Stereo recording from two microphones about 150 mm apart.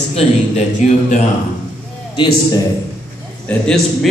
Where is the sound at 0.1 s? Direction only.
40° left (ahead or behind).